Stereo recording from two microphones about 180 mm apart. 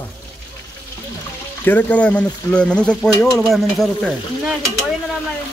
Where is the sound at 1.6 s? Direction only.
10° left (ahead or behind).